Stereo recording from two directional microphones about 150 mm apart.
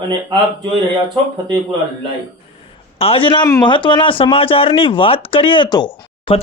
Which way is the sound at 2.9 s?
40° left (ahead or behind).